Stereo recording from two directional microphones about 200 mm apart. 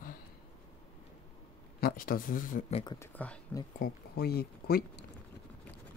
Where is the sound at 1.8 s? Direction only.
45° left (ahead or behind).